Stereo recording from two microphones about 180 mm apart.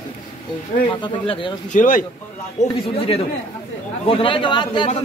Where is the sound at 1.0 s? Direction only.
25° left (ahead or behind).